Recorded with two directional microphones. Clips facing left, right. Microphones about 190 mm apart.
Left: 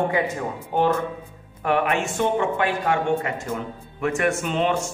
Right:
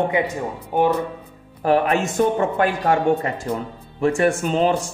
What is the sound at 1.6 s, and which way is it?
A man's voice, 35° right (ahead or behind).